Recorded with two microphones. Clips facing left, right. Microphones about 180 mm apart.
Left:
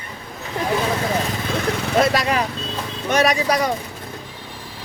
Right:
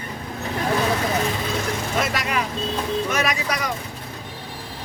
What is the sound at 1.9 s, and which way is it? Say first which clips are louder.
Speech: left 7 dB; 35° left (ahead or behind).